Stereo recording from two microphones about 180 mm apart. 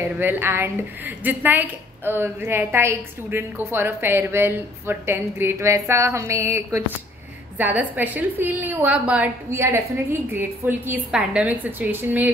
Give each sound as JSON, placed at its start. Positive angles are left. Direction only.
{"t": 0.2, "sound": "a woman's voice", "side_deg": -10}